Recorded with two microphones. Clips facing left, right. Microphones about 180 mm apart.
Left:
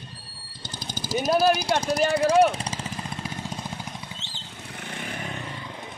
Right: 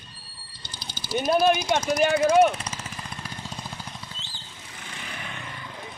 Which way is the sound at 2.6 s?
30° left (ahead or behind).